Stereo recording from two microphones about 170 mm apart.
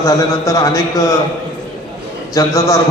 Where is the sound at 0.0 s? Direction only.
20° left (ahead or behind).